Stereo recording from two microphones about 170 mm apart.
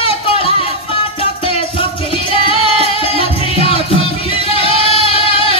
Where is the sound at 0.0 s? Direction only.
35° left (ahead or behind).